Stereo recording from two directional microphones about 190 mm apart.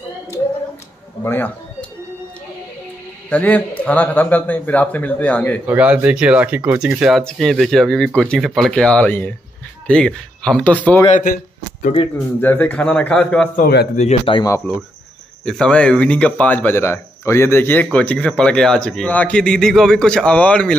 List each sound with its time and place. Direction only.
1.2 s a sound: 10° left (ahead or behind)
3.3 s speech: 10° left (ahead or behind)
5.7 s speech: 5° right (ahead or behind)
11.1 s speech: 45° left (ahead or behind)
12.4 s speech: 10° left (ahead or behind)
13.6 s a man's voice: 55° left (ahead or behind)
13.9 s speech: 30° left (ahead or behind)
15.4 s speech: 5° left (ahead or behind)